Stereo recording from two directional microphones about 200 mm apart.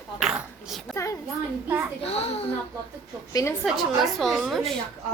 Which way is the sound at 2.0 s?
30° left (ahead or behind).